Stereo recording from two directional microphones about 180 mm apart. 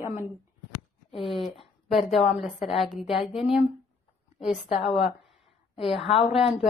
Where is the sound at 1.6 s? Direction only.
Centre (ahead or behind).